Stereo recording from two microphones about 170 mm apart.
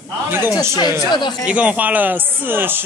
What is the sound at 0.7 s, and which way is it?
Speech, 25° left (ahead or behind).